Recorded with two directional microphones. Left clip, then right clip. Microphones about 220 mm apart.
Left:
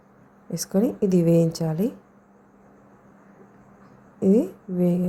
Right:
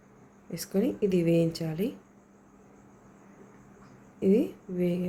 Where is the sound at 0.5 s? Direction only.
15° left (ahead or behind).